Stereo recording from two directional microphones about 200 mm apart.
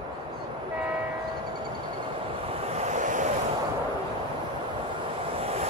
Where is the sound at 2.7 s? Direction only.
35° right (ahead or behind).